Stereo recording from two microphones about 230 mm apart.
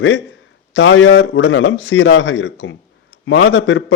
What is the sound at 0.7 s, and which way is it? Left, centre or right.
A man's voice, left.